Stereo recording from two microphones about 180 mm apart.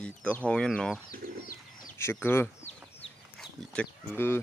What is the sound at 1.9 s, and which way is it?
Speech, 15° left (ahead or behind).